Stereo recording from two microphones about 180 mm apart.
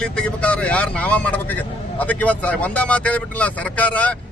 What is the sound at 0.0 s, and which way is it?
A man's voice, 5° left (ahead or behind).